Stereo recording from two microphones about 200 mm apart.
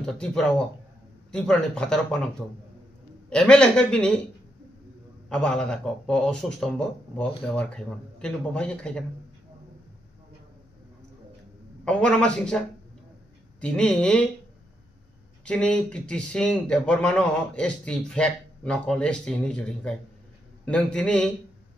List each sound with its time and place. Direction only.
0.0 s speech: 5° left (ahead or behind)
3.3 s speech: 5° left (ahead or behind)
5.3 s speech: 5° left (ahead or behind)
11.8 s speech: 5° left (ahead or behind)
15.4 s speech: 5° left (ahead or behind)